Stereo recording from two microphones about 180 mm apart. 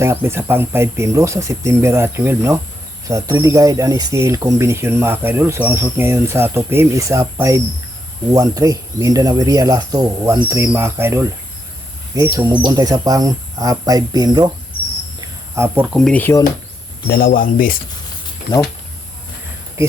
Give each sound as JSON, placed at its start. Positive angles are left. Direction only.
{"t": 0.0, "sound": "speech", "side_deg": -15}
{"t": 16.1, "sound": "speech", "side_deg": 10}
{"t": 17.1, "sound": "speech", "side_deg": 55}
{"t": 18.5, "sound": "speech", "side_deg": 25}